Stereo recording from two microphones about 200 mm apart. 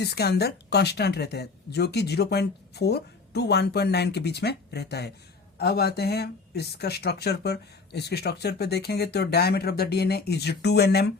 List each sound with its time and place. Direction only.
0.0 s speech: 55° left (ahead or behind)